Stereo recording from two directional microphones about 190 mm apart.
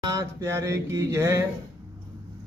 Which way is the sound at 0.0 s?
15° right (ahead or behind).